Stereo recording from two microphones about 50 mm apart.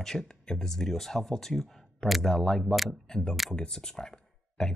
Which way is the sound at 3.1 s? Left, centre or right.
Centre.